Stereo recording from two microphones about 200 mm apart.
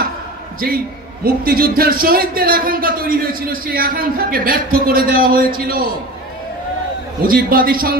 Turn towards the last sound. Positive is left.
turn(degrees=-45)  # may be behind; listen again after turning